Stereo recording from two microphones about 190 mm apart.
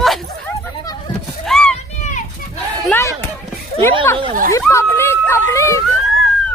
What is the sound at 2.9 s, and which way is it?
Basketball bounce, 15° left (ahead or behind).